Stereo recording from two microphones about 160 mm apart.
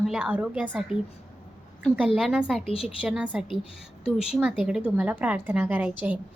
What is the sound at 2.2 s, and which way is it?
A woman's voice, 5° right (ahead or behind).